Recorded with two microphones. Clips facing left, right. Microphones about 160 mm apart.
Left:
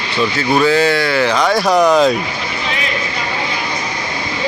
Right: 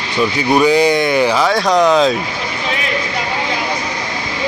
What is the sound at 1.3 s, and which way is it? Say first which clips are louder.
Speech: even; centre (ahead or behind).